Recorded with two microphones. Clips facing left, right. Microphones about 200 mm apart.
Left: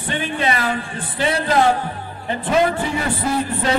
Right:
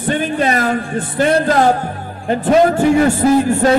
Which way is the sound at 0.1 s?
45° right (ahead or behind).